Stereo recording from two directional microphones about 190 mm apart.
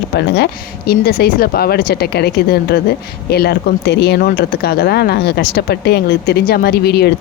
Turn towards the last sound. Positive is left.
turn(degrees=60)  # may be behind; listen again after turning